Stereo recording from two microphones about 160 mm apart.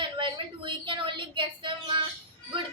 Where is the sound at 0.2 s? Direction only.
30° right (ahead or behind).